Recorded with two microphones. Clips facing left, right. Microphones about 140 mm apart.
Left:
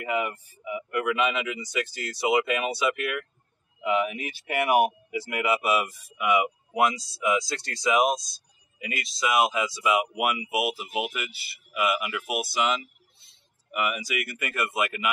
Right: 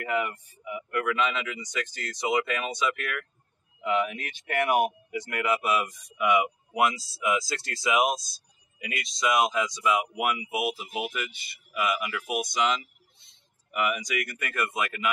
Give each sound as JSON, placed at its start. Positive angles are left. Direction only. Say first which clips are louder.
{"t": 0.0, "sound": "speech", "louder": "left 1 dB", "side_deg": 10}